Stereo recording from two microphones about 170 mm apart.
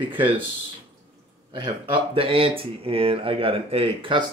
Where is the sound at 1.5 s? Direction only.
30° right (ahead or behind).